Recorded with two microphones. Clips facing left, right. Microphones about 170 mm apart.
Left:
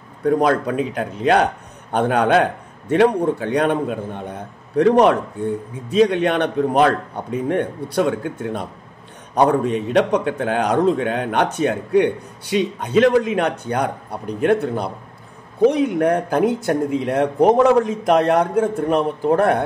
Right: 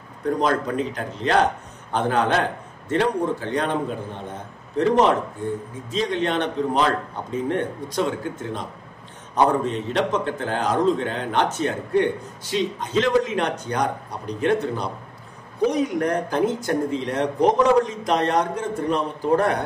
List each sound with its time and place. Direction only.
0.2 s a man's voice: 60° left (ahead or behind)
4.7 s a man's voice: 60° left (ahead or behind)
9.9 s a man's voice: 65° left (ahead or behind)